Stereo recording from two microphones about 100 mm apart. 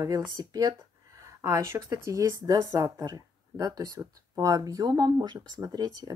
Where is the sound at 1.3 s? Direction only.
30° right (ahead or behind).